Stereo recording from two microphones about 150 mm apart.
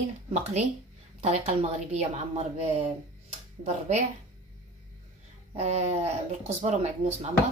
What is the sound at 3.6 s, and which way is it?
Speech, 50° right (ahead or behind).